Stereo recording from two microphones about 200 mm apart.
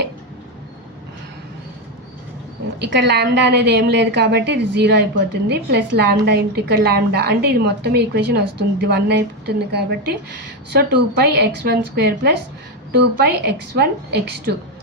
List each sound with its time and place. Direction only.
2.8 s a woman's voice: 55° right (ahead or behind)